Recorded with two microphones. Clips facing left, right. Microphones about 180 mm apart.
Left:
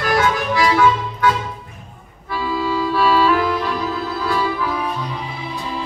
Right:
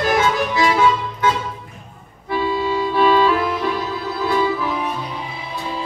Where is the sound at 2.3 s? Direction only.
20° right (ahead or behind).